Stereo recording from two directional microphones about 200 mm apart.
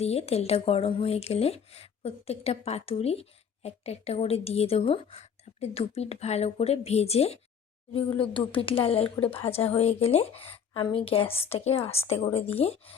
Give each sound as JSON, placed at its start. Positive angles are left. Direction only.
{"t": 0.0, "sound": "speech", "side_deg": 30}